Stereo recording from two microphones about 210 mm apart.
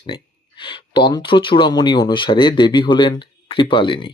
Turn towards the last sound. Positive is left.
turn(degrees=25)  # may be behind; listen again after turning